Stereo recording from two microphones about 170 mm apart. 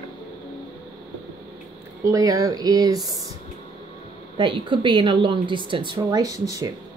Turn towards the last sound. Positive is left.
turn(degrees=-20)  # may be behind; listen again after turning